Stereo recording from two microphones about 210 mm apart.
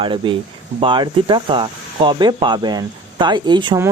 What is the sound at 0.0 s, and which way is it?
Speech, 25° right (ahead or behind).